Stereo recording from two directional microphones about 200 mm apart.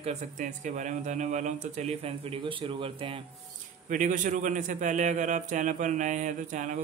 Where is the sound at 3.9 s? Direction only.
40° right (ahead or behind).